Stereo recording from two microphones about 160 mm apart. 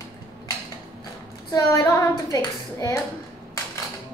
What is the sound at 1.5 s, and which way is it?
A woman's voice, 20° left (ahead or behind).